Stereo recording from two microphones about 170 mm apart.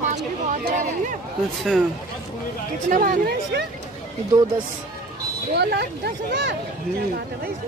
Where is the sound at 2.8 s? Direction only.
50° right (ahead or behind); by 3.7 s 70° right (ahead or behind).